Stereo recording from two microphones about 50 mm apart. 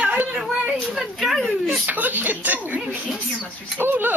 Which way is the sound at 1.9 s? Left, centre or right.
Right.